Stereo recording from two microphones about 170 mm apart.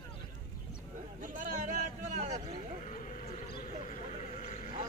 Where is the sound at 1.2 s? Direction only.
50° right (ahead or behind).